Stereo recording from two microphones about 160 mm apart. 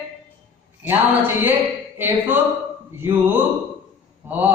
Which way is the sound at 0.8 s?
10° right (ahead or behind).